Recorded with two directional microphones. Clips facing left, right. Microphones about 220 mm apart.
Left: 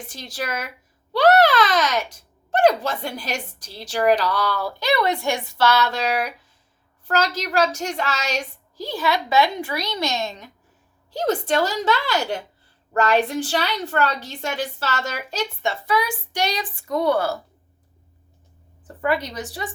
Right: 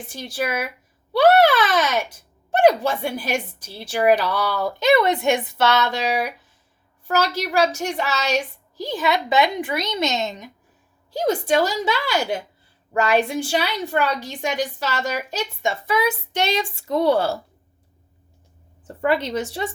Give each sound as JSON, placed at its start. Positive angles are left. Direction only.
{"t": 0.1, "sound": "a woman's voice", "side_deg": -10}
{"t": 4.6, "sound": "a woman's voice", "side_deg": -20}
{"t": 7.1, "sound": "a woman's voice", "side_deg": -10}
{"t": 18.9, "sound": "a woman's voice", "side_deg": -25}